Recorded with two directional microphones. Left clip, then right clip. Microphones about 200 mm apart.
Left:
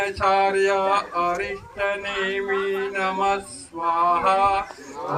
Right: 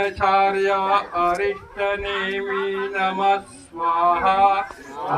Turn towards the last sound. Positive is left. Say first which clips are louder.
# right 2 dB
turn(degrees=-45)  # may be behind; listen again after turning